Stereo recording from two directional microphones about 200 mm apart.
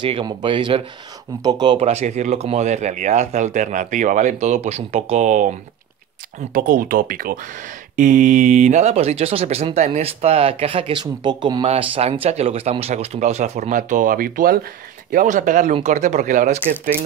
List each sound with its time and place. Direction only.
0.0 s speech: 25° right (ahead or behind)
6.5 s speech: 45° right (ahead or behind)